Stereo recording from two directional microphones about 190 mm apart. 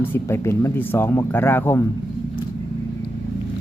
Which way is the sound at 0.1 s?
15° left (ahead or behind).